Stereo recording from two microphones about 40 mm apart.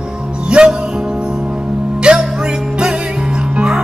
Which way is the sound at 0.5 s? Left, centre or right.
Right.